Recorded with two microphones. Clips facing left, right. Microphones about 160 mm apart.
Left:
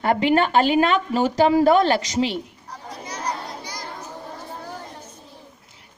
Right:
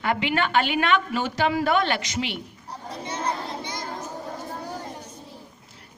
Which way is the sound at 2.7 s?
30° right (ahead or behind).